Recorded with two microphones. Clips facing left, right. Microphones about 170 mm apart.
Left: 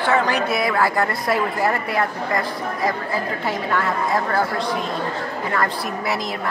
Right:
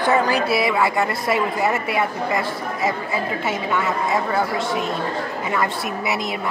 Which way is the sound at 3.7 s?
5° right (ahead or behind).